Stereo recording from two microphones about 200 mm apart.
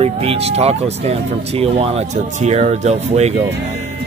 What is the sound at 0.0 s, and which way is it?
Speech, 30° right (ahead or behind).